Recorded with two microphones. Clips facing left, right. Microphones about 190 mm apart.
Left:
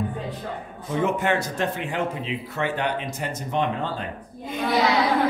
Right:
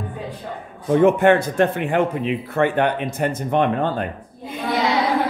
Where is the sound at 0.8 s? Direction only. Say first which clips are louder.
Right 9 dB; 55° right (ahead or behind).